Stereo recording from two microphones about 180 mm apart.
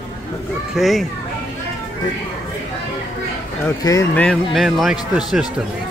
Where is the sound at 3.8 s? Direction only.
20° left (ahead or behind).